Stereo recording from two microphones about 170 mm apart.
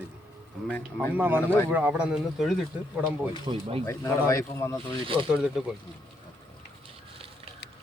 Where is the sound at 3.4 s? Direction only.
30° right (ahead or behind).